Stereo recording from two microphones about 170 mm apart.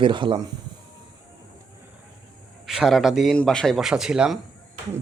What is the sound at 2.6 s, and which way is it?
Speech, 5° right (ahead or behind).